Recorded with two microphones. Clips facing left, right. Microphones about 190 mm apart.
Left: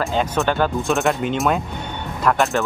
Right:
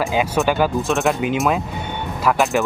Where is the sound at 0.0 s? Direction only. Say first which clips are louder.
Right 2 dB; 5° right (ahead or behind).